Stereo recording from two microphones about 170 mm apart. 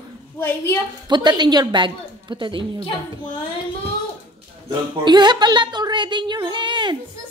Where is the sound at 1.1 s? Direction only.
25° right (ahead or behind).